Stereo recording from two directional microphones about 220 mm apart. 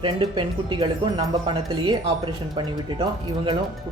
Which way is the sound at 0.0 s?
20° right (ahead or behind).